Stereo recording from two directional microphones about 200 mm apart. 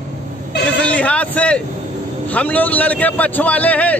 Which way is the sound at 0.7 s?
5° left (ahead or behind).